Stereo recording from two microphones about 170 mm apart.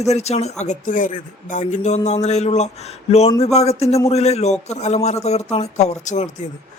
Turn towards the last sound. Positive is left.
turn(degrees=45)  # may be behind; listen again after turning